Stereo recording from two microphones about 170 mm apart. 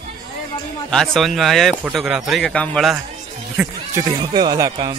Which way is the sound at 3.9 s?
20° right (ahead or behind).